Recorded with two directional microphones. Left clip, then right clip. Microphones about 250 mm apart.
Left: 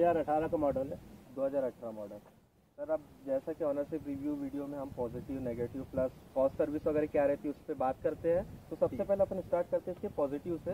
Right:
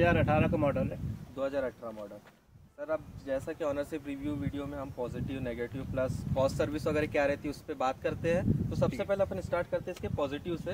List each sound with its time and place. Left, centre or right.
0.0 s speech: centre
1.4 s speech: right